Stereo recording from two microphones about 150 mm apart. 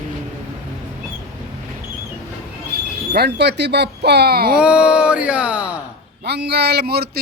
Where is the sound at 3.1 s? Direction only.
90° right.